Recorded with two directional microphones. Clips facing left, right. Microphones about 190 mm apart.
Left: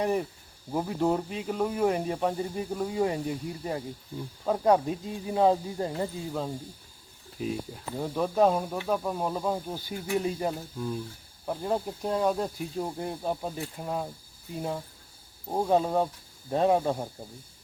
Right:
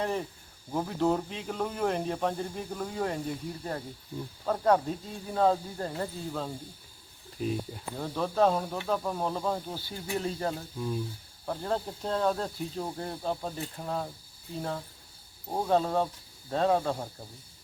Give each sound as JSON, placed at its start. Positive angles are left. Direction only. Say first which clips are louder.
{"t": 0.0, "sound": "speech", "louder": "left 4 dB", "side_deg": 10}
{"t": 7.3, "sound": "speech", "louder": "even", "side_deg": 0}
{"t": 7.9, "sound": "speech", "louder": "left 2 dB", "side_deg": 10}
{"t": 10.8, "sound": "speech", "louder": "even", "side_deg": 0}
{"t": 11.4, "sound": "speech", "louder": "left 2 dB", "side_deg": 10}